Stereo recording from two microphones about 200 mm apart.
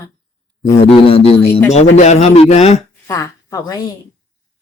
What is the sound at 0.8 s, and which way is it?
A man's voice, 25° left (ahead or behind).